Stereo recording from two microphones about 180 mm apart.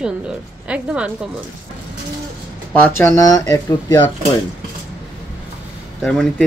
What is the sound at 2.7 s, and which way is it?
Speech, 10° left (ahead or behind).